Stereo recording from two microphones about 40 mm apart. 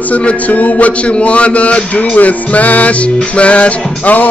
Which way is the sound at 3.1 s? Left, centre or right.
Left.